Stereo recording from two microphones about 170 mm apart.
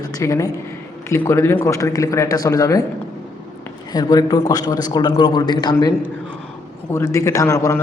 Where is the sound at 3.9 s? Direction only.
25° left (ahead or behind).